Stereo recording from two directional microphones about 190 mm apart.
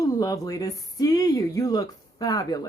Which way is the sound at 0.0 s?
20° left (ahead or behind).